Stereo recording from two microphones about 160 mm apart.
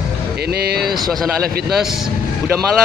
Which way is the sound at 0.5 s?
75° right (ahead or behind).